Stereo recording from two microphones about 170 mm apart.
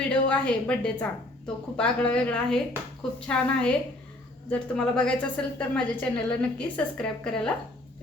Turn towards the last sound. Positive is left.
turn(degrees=5)  # may be behind; listen again after turning